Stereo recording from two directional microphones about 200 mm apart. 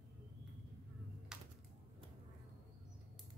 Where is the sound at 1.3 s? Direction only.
5° right (ahead or behind).